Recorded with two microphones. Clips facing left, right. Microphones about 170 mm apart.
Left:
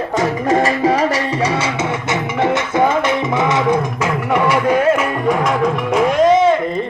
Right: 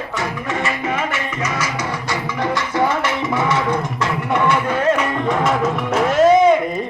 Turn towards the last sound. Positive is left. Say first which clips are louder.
# even
turn(degrees=-5)  # may be behind; listen again after turning